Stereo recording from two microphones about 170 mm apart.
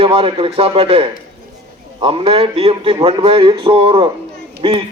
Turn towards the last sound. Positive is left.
turn(degrees=-30)  # may be behind; listen again after turning